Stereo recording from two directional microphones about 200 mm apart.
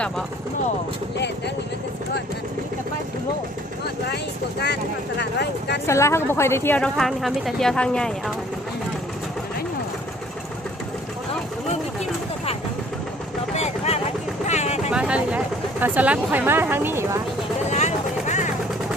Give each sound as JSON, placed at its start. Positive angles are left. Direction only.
{"t": 4.6, "sound": "speech", "side_deg": 55}
{"t": 5.8, "sound": "a woman's voice", "side_deg": 15}
{"t": 13.6, "sound": "a sound", "side_deg": 35}
{"t": 14.4, "sound": "vehicle", "side_deg": 35}
{"t": 14.8, "sound": "speech", "side_deg": -5}
{"t": 17.7, "sound": "vehicle", "side_deg": 35}